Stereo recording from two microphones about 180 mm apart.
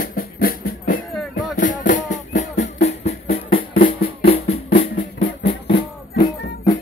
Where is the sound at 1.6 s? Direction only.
45° left (ahead or behind).